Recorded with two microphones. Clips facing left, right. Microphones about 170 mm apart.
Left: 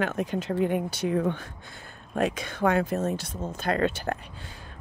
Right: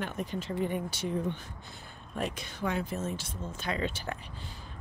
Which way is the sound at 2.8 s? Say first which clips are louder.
Left 7 dB; 70° left (ahead or behind).